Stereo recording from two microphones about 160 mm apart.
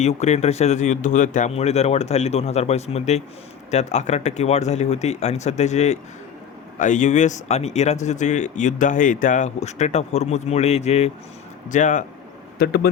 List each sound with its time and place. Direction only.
0.0 s speech: 45° left (ahead or behind)
12.5 s speech: 75° left (ahead or behind)